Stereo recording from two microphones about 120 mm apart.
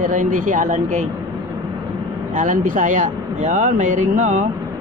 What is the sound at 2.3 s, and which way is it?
Speech, 90° right.